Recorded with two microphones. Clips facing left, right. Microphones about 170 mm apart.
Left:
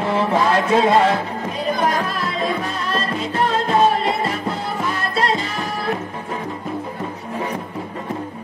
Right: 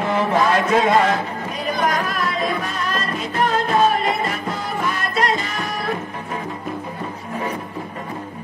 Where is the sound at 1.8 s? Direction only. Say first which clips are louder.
Right 2 dB; 30° left (ahead or behind).